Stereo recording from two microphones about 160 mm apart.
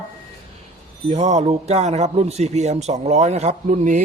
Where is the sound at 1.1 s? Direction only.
45° right (ahead or behind).